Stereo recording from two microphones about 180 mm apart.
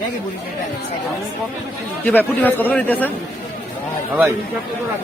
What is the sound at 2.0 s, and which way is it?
A man's voice, 10° left (ahead or behind).